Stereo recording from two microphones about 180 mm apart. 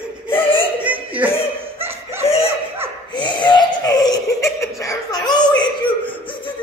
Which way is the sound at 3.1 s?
25° left (ahead or behind).